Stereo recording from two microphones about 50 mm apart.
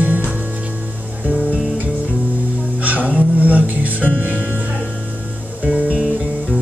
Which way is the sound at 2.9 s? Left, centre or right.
Right.